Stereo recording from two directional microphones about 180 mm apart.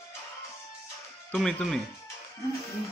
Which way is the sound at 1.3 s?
5° left (ahead or behind).